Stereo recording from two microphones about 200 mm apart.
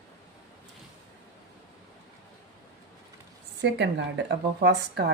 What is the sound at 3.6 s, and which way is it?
A woman's voice, 60° right (ahead or behind).